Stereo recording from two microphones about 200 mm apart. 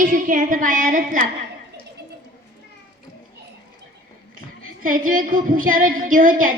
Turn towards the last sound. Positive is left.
turn(degrees=-45)  # may be behind; listen again after turning